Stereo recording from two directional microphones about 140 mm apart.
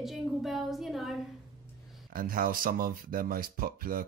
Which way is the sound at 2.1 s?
90° right.